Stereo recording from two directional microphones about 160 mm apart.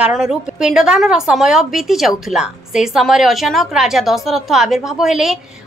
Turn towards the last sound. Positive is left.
turn(degrees=0)  # may be behind; listen again after turning